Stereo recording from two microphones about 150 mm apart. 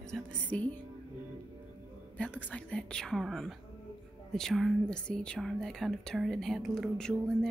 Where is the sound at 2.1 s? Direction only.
10° left (ahead or behind).